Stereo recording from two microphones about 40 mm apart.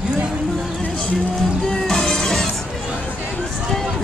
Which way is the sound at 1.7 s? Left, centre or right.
Centre.